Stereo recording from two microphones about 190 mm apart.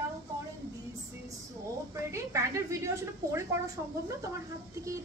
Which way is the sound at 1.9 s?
15° right (ahead or behind).